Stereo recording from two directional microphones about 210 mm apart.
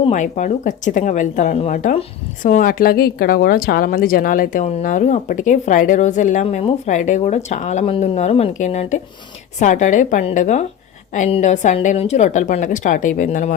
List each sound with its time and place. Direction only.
0.0 s a woman's voice: 35° left (ahead or behind)